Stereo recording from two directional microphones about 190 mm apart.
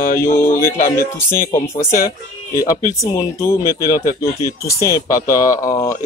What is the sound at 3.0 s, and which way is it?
Speech, 15° left (ahead or behind).